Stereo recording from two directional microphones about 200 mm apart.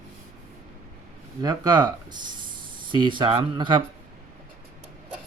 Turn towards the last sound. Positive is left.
turn(degrees=-25)  # may be behind; listen again after turning